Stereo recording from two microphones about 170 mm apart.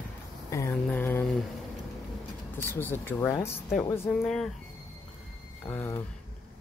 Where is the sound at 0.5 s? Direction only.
15° left (ahead or behind).